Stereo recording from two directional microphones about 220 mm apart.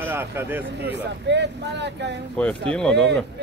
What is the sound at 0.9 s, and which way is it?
Speech, 50° right (ahead or behind).